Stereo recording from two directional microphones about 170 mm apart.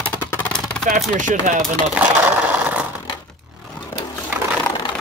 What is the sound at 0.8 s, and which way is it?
Speech, 50° right (ahead or behind).